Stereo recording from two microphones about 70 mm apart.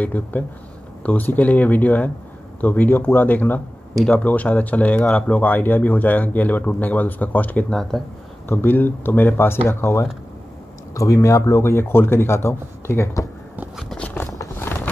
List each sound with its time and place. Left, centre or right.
0.0 s speech: left
7.9 s speech: centre
8.5 s speech: left
11.0 s speech: left
13.9 s a sound: centre